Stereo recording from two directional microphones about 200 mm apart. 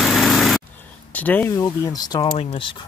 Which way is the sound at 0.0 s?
Centre (ahead or behind).